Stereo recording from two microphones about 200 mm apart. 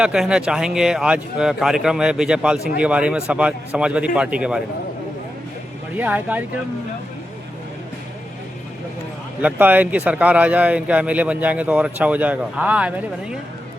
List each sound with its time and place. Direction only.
0.0 s a man's voice: 5° right (ahead or behind)
6.0 s a man's voice: 10° right (ahead or behind)
9.4 s a man's voice: 10° right (ahead or behind)